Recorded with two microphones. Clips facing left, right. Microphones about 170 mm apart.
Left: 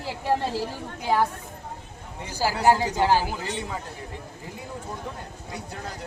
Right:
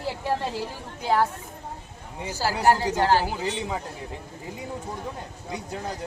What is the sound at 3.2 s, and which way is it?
Speech, 15° right (ahead or behind).